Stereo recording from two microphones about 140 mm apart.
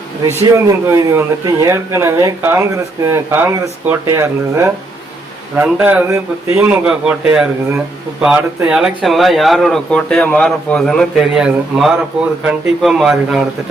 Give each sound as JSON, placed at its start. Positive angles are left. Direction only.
{"t": 0.4, "sound": "a man's voice", "side_deg": -25}